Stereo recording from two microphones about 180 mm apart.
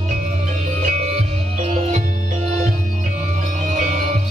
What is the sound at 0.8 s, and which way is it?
Music, 40° right (ahead or behind).